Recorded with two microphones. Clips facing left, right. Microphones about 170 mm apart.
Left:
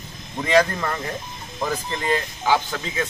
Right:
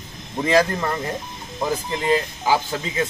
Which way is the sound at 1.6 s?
10° right (ahead or behind).